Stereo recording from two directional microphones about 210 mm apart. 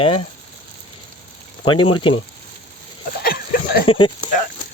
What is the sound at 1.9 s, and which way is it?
Speech, 25° left (ahead or behind).